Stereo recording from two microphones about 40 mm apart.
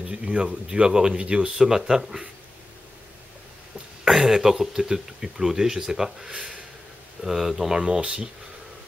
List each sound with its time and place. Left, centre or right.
0.0 s a man's voice: right
4.1 s speech: centre
6.3 s a sound: right
7.2 s a man's voice: centre; by 8.3 s right